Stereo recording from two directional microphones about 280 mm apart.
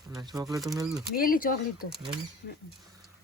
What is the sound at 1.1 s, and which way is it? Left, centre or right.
Speech, left.